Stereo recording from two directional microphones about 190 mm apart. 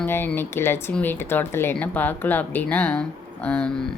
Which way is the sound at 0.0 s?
10° left (ahead or behind).